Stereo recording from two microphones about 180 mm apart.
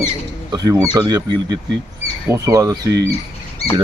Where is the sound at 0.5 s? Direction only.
20° right (ahead or behind).